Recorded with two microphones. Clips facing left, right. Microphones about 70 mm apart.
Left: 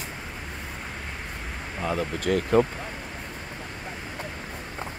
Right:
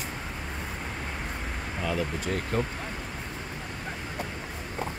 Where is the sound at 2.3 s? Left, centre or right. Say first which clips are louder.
Left 10 dB; left.